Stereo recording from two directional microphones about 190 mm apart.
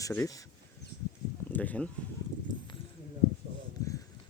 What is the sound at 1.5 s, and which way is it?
Speech, 5° left (ahead or behind).